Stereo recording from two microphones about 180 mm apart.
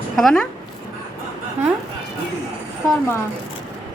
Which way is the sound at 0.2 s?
Centre (ahead or behind).